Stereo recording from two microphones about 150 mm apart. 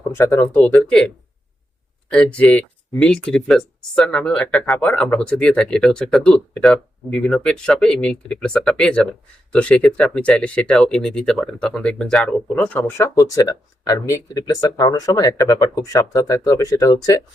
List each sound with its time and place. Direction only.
0.1 s speech: 15° left (ahead or behind)
13.1 s speech: 25° left (ahead or behind)